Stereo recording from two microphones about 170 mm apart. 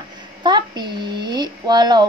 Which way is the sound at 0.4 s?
25° right (ahead or behind).